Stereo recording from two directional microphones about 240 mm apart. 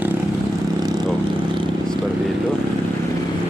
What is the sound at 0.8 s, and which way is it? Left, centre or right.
Vehicle, centre.